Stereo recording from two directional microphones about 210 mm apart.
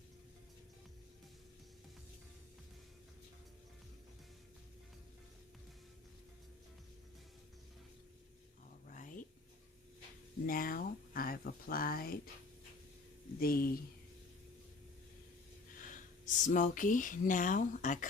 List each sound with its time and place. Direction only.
8.9 s a sound: 40° left (ahead or behind)
10.4 s speech: 40° left (ahead or behind)
13.4 s speech: 45° left (ahead or behind)
15.8 s speech: 40° left (ahead or behind)